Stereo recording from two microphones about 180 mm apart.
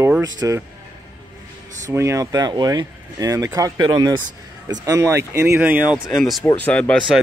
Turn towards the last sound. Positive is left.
turn(degrees=5)  # may be behind; listen again after turning